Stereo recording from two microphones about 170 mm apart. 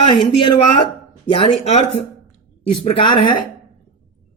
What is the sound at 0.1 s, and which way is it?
Speech, 30° left (ahead or behind).